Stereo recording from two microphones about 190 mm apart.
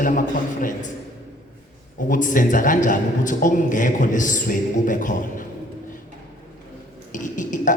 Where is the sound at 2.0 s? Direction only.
45° left (ahead or behind).